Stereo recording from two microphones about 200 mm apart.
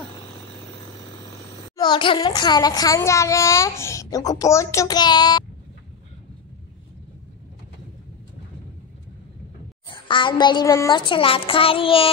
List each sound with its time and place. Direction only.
1.8 s speech: 25° left (ahead or behind)
9.8 s a child's voice: 25° left (ahead or behind)